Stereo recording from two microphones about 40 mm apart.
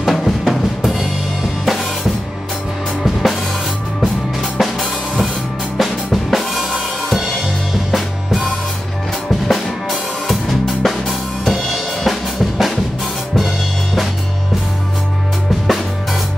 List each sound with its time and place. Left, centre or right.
0.0 s drum: centre
3.0 s drum kit: centre
4.6 s drum kit: centre
15.6 s drum: centre